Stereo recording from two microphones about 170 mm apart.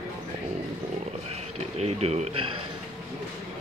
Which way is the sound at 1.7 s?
40° right (ahead or behind).